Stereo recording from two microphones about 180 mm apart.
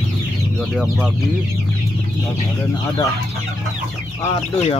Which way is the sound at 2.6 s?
15° left (ahead or behind).